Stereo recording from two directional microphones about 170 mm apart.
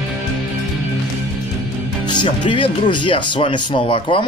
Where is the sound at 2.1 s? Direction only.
30° left (ahead or behind).